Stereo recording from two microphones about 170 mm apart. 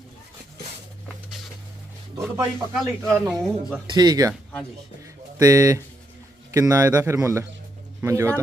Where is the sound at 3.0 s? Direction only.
20° right (ahead or behind).